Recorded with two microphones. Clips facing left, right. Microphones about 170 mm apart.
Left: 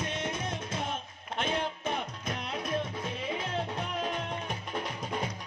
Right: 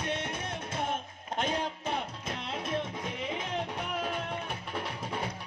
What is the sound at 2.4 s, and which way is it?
Music, 25° right (ahead or behind).